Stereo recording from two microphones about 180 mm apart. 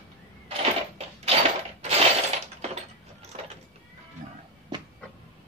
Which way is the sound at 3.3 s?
40° right (ahead or behind).